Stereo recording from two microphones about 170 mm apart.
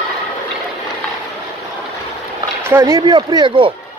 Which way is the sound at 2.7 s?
15° right (ahead or behind).